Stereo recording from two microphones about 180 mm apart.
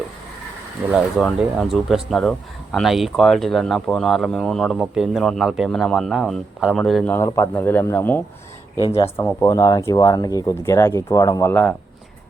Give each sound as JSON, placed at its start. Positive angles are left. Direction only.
{"t": 0.9, "sound": "speech", "side_deg": -5}
{"t": 8.8, "sound": "speech", "side_deg": 30}
{"t": 9.1, "sound": "speech", "side_deg": 15}